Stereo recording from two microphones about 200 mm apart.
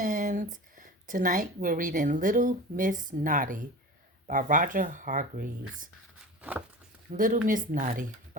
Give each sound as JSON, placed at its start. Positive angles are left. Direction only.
{"t": 0.0, "sound": "a sound", "side_deg": -40}
{"t": 0.5, "sound": "speech", "side_deg": -40}
{"t": 7.1, "sound": "speech", "side_deg": -40}